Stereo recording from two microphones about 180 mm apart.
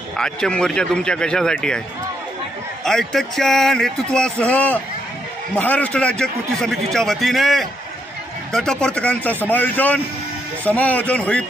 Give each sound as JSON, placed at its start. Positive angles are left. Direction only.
{"t": 0.2, "sound": "a man's voice", "side_deg": 5}
{"t": 2.8, "sound": "a man's voice", "side_deg": 0}